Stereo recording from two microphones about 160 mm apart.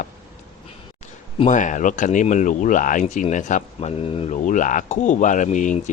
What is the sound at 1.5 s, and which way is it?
Speech, 50° left (ahead or behind).